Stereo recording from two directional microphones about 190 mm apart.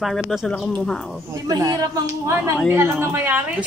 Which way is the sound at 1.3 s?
20° right (ahead or behind).